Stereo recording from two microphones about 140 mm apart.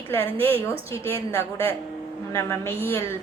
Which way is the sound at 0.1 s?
15° left (ahead or behind).